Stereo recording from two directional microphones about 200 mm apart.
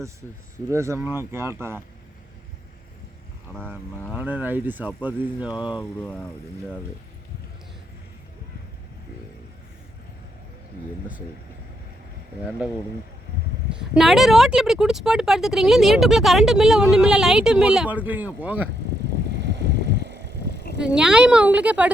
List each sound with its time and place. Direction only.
0.7 s speech: 15° right (ahead or behind)
4.1 s speech: 10° right (ahead or behind)
6.0 s speech: 5° left (ahead or behind)
13.7 s speech: centre (ahead or behind)
19.3 s vehicle: 60° right (ahead or behind)
20.8 s speech: 5° right (ahead or behind)